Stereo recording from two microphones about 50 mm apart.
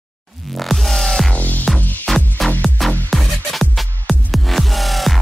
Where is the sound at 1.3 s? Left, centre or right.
Left.